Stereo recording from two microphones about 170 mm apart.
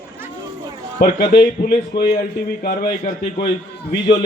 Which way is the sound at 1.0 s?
65° left (ahead or behind).